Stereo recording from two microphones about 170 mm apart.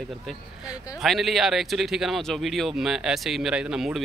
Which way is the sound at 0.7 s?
Centre (ahead or behind).